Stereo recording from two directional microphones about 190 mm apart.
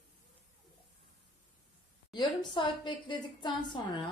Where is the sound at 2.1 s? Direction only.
25° left (ahead or behind).